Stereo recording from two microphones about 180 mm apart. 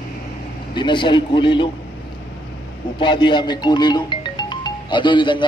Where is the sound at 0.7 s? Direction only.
25° left (ahead or behind).